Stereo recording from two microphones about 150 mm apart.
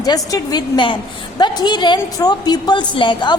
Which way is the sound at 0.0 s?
25° left (ahead or behind).